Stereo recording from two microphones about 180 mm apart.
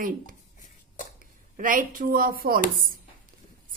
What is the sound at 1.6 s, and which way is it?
Speech, 50° right (ahead or behind).